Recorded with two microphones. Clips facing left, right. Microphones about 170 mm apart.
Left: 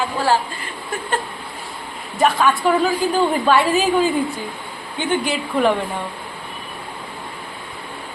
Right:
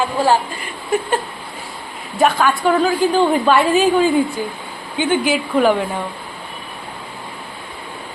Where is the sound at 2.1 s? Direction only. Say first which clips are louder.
Right 1 dB; centre (ahead or behind).